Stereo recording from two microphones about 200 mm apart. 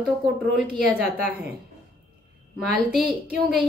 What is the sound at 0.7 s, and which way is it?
Speech, 5° right (ahead or behind).